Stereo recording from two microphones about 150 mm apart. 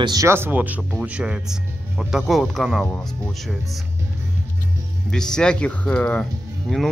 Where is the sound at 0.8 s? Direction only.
Centre (ahead or behind).